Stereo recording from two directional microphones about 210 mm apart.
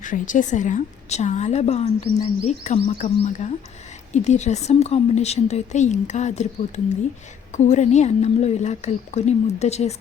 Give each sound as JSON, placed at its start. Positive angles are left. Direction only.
{"t": 0.0, "sound": "a woman's voice", "side_deg": 40}